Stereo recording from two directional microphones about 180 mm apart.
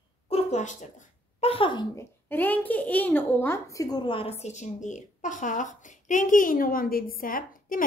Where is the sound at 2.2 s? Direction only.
10° left (ahead or behind).